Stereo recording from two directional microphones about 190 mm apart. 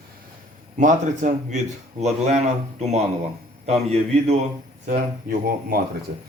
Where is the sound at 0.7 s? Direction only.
40° right (ahead or behind).